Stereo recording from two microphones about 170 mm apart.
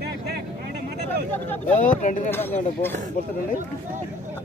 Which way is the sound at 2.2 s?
10° left (ahead or behind).